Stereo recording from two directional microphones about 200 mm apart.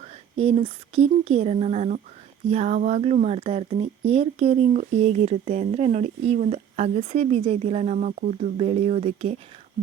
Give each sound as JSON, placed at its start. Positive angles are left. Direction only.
{"t": 0.0, "sound": "speech", "side_deg": -30}